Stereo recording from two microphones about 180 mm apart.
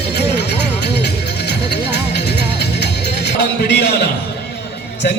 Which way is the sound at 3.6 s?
65° left (ahead or behind).